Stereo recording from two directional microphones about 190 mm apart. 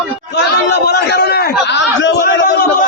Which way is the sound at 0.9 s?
60° left (ahead or behind).